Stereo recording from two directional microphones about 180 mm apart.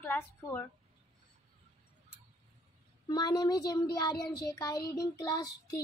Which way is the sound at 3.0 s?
20° left (ahead or behind).